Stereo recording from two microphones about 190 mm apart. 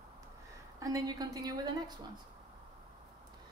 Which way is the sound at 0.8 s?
20° right (ahead or behind).